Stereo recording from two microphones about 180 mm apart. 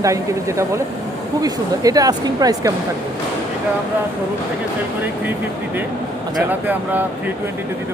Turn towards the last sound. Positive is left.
turn(degrees=-10)  # may be behind; listen again after turning